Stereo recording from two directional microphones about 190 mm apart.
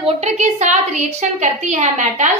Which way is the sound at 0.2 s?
40° right (ahead or behind).